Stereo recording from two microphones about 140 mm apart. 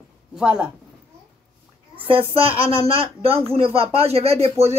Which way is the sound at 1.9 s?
40° right (ahead or behind).